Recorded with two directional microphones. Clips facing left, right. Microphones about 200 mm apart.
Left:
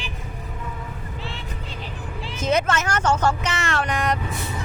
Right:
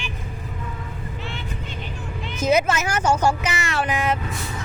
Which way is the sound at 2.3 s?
10° right (ahead or behind).